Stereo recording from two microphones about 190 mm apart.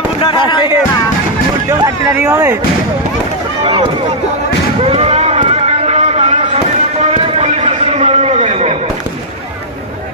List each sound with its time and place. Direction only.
0.2 s speech: 25° left (ahead or behind)
1.7 s speech: 15° right (ahead or behind)
4.8 s a sound: 35° right (ahead or behind)